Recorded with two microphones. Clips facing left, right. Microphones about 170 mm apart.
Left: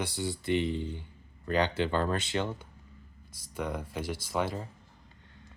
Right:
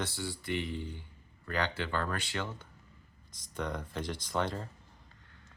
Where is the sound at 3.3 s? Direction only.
10° left (ahead or behind).